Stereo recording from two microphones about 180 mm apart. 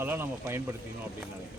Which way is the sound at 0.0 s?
10° right (ahead or behind).